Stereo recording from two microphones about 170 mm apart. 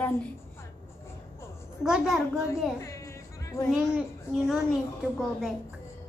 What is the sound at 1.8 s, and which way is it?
Speech, 5° right (ahead or behind).